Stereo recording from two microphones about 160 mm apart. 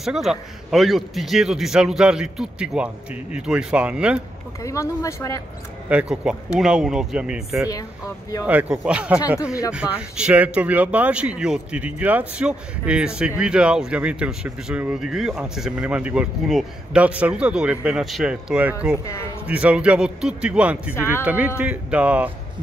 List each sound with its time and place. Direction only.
0.0 s a man's voice: centre (ahead or behind)
4.6 s speech: 20° left (ahead or behind)
5.9 s a man's voice: 5° right (ahead or behind)
8.5 s speech: 10° right (ahead or behind)
20.9 s speech: 15° left (ahead or behind)
21.2 s speech: 10° right (ahead or behind)